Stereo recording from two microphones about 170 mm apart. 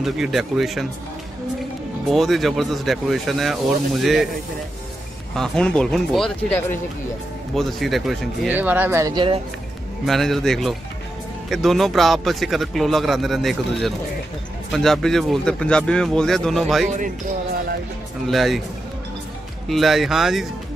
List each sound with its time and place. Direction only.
0.0 s speech: centre (ahead or behind)
2.0 s speech: centre (ahead or behind)
5.3 s speech: 5° left (ahead or behind)
8.5 s speech: 10° right (ahead or behind)
9.1 s speech: 30° right (ahead or behind)
10.0 s speech: centre (ahead or behind)
18.2 s speech: centre (ahead or behind)
19.7 s speech: centre (ahead or behind)